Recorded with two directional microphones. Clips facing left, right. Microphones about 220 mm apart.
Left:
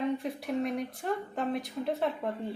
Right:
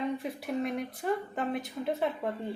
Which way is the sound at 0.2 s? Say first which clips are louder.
Left 1 dB; centre (ahead or behind).